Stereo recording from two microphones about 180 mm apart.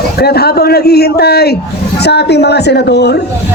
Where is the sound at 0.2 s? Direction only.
60° left (ahead or behind).